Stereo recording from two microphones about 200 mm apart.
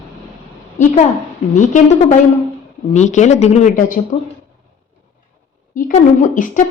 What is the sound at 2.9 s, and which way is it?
A woman's voice, 35° left (ahead or behind).